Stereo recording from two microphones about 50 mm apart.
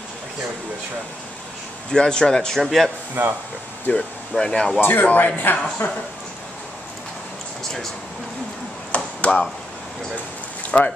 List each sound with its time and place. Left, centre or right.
1.9 s a man's voice: centre
3.2 s speech: right
3.9 s speech: left
4.4 s speech: centre
4.7 s a man's voice: left
8.9 s a sound: left
10.7 s speech: left